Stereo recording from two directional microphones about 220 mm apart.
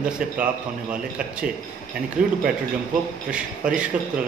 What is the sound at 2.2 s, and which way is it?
Speech, 35° right (ahead or behind).